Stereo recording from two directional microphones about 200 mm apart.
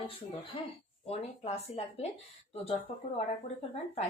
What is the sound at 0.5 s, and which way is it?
A woman's voice, 25° left (ahead or behind).